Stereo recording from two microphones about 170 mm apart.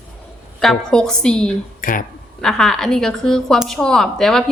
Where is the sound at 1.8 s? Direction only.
55° left (ahead or behind).